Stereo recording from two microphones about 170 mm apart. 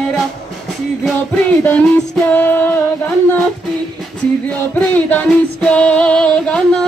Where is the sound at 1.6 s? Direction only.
5° left (ahead or behind).